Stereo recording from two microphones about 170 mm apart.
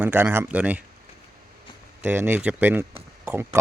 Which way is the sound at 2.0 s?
10° right (ahead or behind).